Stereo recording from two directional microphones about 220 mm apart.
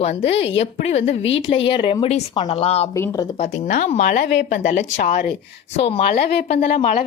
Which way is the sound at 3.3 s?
30° left (ahead or behind).